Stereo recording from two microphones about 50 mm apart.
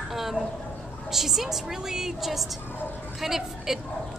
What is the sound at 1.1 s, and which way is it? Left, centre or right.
A woman's voice, centre.